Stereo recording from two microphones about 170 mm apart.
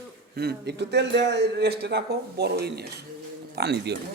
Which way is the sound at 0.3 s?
75° right (ahead or behind).